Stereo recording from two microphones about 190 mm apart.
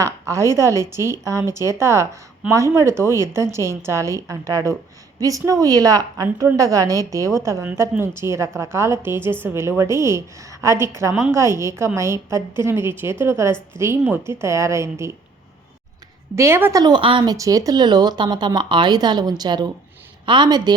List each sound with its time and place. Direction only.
0.0 s a woman's voice: 15° right (ahead or behind)
16.3 s speech: 15° right (ahead or behind)